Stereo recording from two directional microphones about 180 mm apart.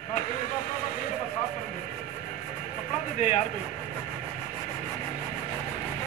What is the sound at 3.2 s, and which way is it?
Speech, 40° left (ahead or behind).